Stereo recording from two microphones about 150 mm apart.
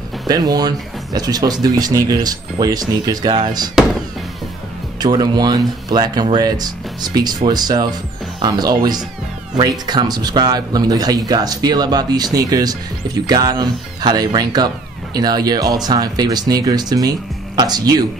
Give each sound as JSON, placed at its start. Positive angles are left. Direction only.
{"t": 0.3, "sound": "speech", "side_deg": -25}
{"t": 5.0, "sound": "speech", "side_deg": -25}